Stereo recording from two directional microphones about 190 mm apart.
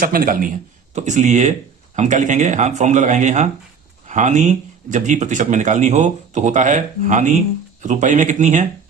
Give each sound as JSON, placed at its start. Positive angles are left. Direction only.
{"t": 0.0, "sound": "speech", "side_deg": -50}